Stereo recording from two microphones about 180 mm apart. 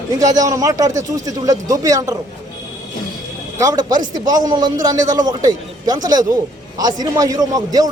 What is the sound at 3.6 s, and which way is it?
A man's voice, 20° right (ahead or behind).